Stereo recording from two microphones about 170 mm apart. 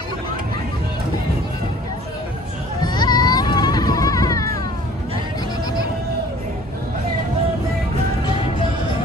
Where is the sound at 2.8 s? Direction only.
25° left (ahead or behind).